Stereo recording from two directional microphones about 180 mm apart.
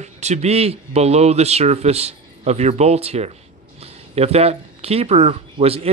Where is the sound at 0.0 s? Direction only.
40° right (ahead or behind).